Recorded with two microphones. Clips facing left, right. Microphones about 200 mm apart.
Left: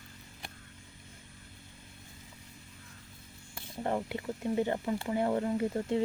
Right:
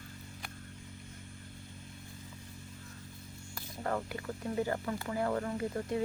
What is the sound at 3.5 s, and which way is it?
Speech, 25° left (ahead or behind).